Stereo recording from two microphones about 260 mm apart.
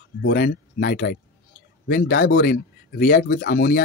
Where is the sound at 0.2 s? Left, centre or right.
Left.